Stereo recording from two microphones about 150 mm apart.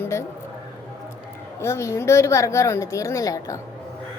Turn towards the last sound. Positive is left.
turn(degrees=20)  # may be behind; listen again after turning